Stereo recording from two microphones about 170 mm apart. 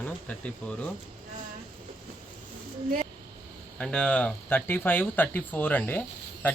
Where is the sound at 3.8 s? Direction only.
5° left (ahead or behind).